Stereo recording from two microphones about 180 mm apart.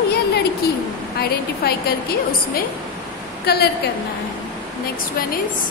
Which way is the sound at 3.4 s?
60° left (ahead or behind).